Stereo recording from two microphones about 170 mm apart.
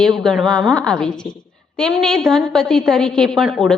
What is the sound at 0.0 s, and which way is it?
A woman's voice, 5° left (ahead or behind).